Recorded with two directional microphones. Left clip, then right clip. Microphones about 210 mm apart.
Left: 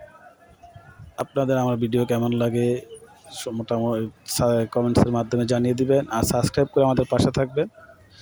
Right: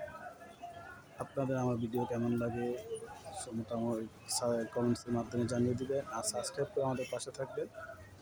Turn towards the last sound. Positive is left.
turn(degrees=35)  # may be behind; listen again after turning